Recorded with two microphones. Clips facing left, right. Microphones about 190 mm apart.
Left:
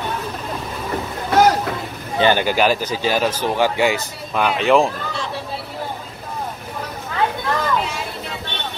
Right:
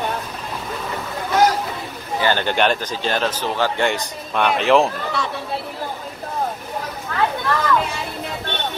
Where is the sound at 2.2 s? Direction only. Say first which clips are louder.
Left 3 dB; 10° left (ahead or behind).